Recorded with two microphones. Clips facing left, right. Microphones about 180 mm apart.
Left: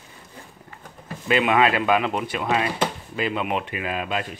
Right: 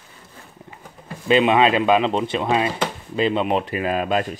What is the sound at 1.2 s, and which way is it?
Speech, 20° right (ahead or behind).